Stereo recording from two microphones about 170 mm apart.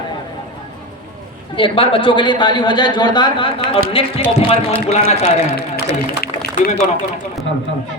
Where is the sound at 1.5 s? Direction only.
30° left (ahead or behind).